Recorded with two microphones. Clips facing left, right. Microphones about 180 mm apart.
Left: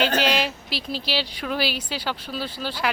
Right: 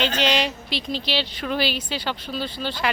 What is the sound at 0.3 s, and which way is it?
Speech, 5° left (ahead or behind).